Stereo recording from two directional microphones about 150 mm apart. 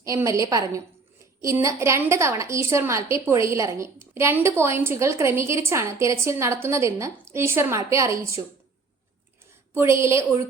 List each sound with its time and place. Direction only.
0.0 s a woman's voice: 20° right (ahead or behind)
9.7 s a woman's voice: 20° right (ahead or behind)